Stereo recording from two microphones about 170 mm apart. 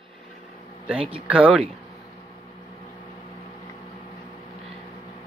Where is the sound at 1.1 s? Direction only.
5° right (ahead or behind).